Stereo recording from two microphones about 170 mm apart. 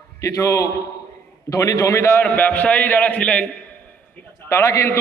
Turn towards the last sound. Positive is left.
turn(degrees=15)  # may be behind; listen again after turning